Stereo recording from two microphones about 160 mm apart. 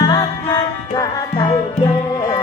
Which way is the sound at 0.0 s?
25° left (ahead or behind).